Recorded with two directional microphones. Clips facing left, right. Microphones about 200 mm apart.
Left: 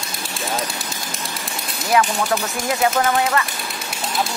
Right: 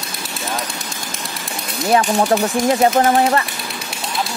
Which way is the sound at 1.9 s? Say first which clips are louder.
Right 3 dB; 35° right (ahead or behind).